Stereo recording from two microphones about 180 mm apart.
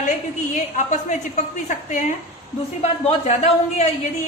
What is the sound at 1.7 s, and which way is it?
A woman's voice, 40° left (ahead or behind).